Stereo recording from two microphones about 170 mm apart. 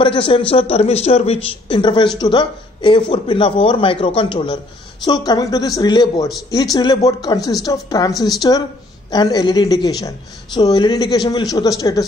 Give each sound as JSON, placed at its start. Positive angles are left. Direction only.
{"t": 0.0, "sound": "speech", "side_deg": 30}